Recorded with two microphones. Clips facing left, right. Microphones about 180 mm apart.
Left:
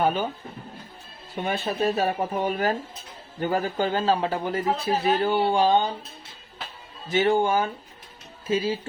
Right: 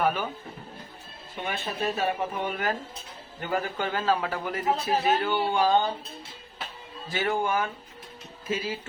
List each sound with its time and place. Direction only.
0.0 s a man's voice: 25° left (ahead or behind)
1.5 s a man's voice: 35° left (ahead or behind)
5.6 s a man's voice: 20° left (ahead or behind)
7.1 s a man's voice: 25° left (ahead or behind)